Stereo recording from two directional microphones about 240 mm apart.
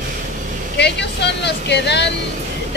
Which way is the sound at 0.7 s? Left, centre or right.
Left.